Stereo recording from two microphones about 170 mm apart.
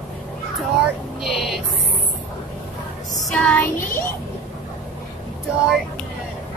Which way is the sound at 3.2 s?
5° left (ahead or behind).